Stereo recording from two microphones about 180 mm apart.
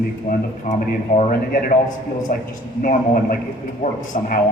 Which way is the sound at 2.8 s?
50° left (ahead or behind).